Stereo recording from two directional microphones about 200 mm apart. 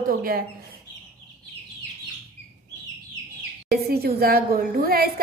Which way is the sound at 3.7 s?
50° right (ahead or behind).